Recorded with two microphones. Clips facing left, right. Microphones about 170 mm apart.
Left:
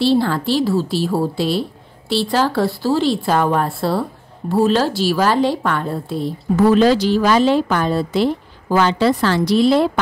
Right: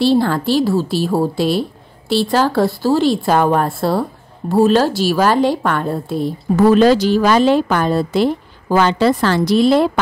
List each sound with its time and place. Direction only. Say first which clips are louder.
0.0 s speech: right 2 dB; 50° right (ahead or behind)